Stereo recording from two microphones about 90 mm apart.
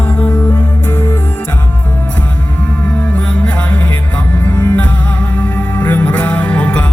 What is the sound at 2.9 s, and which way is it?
Music, 15° left (ahead or behind).